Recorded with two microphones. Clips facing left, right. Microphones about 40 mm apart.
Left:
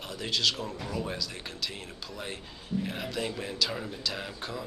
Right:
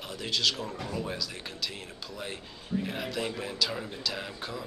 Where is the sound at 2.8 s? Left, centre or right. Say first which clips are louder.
Even; centre.